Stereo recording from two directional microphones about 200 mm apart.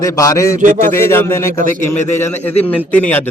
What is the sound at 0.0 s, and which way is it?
Speech, 15° left (ahead or behind).